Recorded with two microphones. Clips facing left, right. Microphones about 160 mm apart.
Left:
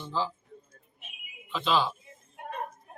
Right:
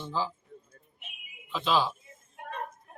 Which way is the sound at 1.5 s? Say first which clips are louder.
Even; 5° right (ahead or behind).